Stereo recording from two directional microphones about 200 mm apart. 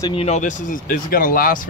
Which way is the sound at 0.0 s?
30° left (ahead or behind).